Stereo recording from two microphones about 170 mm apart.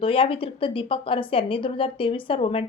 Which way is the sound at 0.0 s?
30° left (ahead or behind).